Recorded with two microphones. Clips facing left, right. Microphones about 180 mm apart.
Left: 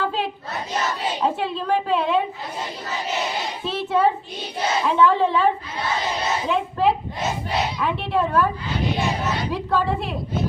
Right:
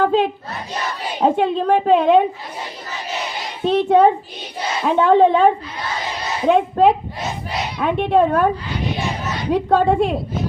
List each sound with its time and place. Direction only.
0.0 s battle cry: 50° right (ahead or behind)
1.2 s a woman's voice: 50° right (ahead or behind)
3.6 s a child's voice: 55° right (ahead or behind)
6.5 s a woman's voice: 55° right (ahead or behind)
9.5 s a woman's voice: 55° right (ahead or behind)